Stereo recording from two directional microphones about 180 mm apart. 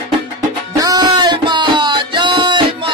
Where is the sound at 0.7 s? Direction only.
20° right (ahead or behind).